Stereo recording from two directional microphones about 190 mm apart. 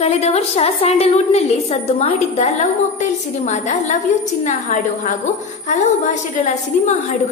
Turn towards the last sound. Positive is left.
turn(degrees=40)  # may be behind; listen again after turning